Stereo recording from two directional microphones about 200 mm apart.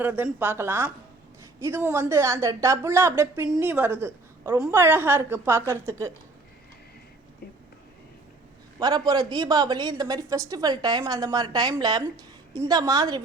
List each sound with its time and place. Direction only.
0.0 s a woman's voice: 10° right (ahead or behind)
8.8 s a woman's voice: 20° right (ahead or behind)